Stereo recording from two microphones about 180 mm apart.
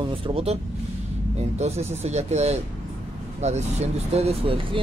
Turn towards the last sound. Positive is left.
turn(degrees=-35)  # may be behind; listen again after turning